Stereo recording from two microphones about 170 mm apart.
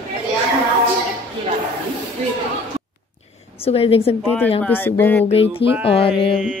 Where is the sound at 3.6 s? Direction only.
35° left (ahead or behind).